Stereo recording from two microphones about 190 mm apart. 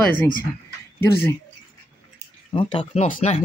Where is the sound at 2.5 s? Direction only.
25° left (ahead or behind).